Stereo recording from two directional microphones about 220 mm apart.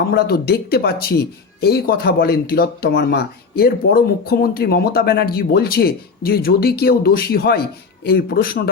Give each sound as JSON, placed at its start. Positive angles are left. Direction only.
{"t": 0.1, "sound": "speech", "side_deg": 45}